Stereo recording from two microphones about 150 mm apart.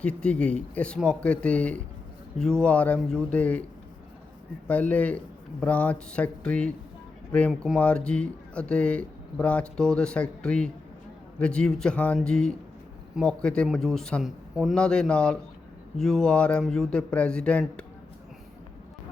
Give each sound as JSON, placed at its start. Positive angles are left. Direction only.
{"t": 0.0, "sound": "speech", "side_deg": 10}
{"t": 4.7, "sound": "a man's voice", "side_deg": 10}